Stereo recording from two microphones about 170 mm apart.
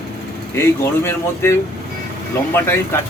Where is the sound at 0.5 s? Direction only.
15° left (ahead or behind).